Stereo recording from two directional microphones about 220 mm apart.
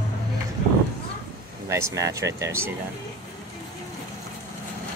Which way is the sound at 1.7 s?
15° right (ahead or behind).